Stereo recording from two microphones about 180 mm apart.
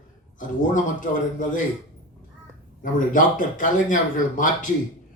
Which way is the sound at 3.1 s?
45° left (ahead or behind).